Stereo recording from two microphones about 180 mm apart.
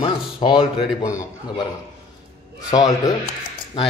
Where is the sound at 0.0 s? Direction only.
30° left (ahead or behind).